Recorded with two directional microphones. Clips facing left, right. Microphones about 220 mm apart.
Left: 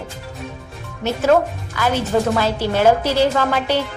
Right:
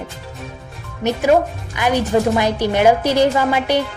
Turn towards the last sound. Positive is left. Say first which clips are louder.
# right 2 dB
turn(degrees=-15)  # may be behind; listen again after turning